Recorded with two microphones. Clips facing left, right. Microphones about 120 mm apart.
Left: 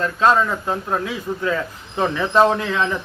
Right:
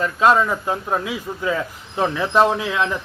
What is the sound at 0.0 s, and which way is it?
A man's voice, 10° right (ahead or behind).